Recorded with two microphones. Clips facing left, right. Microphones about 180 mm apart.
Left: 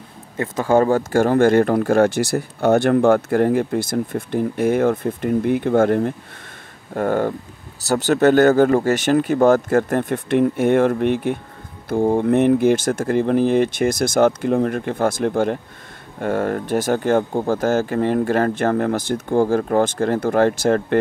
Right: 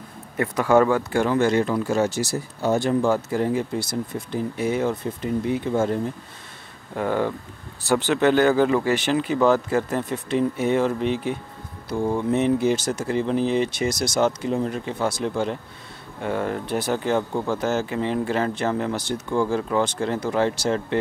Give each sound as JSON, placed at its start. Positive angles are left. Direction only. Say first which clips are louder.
{"t": 0.4, "sound": "speech", "louder": "left 1 dB", "side_deg": 30}
{"t": 7.0, "sound": "speech", "louder": "left 4 dB", "side_deg": 50}